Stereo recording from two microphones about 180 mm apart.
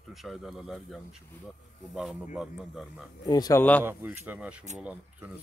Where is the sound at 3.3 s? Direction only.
20° left (ahead or behind).